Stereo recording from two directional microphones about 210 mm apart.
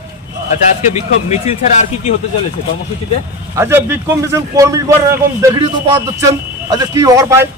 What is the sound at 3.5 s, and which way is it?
A man's voice, 10° right (ahead or behind).